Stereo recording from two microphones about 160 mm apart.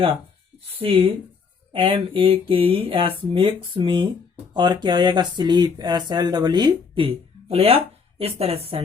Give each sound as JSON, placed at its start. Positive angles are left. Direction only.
{"t": 0.8, "sound": "speech", "side_deg": -35}